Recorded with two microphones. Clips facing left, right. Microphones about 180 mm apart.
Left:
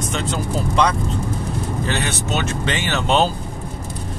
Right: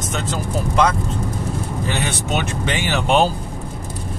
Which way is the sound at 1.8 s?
10° right (ahead or behind).